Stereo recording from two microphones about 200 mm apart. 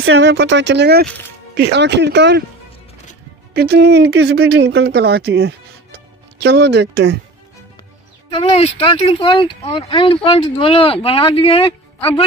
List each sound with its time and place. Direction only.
0.0 s speech: 70° right (ahead or behind)
3.5 s speech: 55° right (ahead or behind)
8.3 s speech: 30° left (ahead or behind)